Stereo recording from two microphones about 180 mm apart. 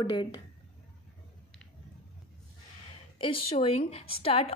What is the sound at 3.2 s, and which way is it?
Speech, 30° left (ahead or behind).